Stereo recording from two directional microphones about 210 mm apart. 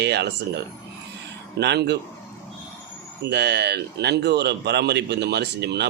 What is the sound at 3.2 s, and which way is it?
Speech, 55° right (ahead or behind).